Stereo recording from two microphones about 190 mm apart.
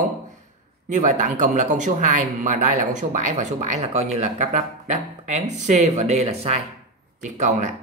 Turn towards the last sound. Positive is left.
turn(degrees=-40)  # may be behind; listen again after turning